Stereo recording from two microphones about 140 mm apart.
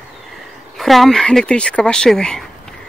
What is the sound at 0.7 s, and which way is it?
Speech, centre (ahead or behind).